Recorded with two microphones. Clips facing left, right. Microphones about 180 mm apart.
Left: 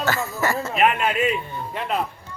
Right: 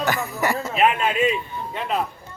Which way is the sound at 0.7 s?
Centre (ahead or behind).